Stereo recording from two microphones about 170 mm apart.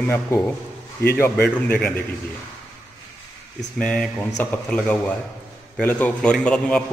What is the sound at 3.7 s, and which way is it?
A man's voice, 5° left (ahead or behind).